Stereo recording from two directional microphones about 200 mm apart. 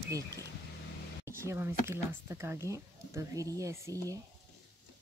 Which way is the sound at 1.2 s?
15° right (ahead or behind).